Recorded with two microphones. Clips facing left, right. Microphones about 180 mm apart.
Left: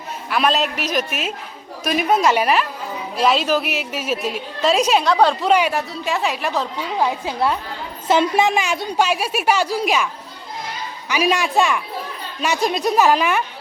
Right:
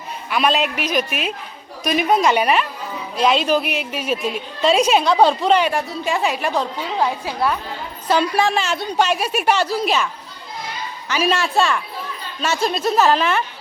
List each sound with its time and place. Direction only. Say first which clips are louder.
0.3 s a woman's voice: even; centre (ahead or behind)
5.1 s speech: right 2 dB; 15° right (ahead or behind)
5.4 s a woman's voice: even; 10° left (ahead or behind)
7.0 s a woman's voice: left 1 dB; 20° left (ahead or behind)
11.1 s a woman's voice: left 1 dB; 15° left (ahead or behind)